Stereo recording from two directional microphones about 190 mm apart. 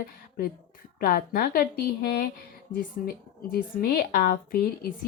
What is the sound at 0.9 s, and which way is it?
Speech, 50° left (ahead or behind).